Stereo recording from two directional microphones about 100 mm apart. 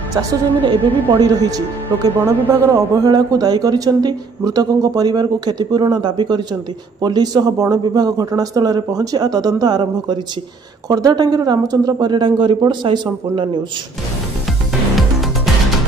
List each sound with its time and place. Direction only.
0.6 s a woman's voice: 65° right (ahead or behind)
1.2 s a man's voice: 40° right (ahead or behind)
2.1 s speech: 20° right (ahead or behind)
3.0 s a man's voice: 40° right (ahead or behind)
15.0 s music: centre (ahead or behind)